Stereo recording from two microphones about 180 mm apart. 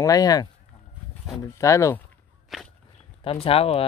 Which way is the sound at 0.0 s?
20° left (ahead or behind).